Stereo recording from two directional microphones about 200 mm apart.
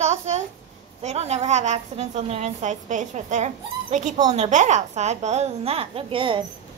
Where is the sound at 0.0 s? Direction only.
35° right (ahead or behind).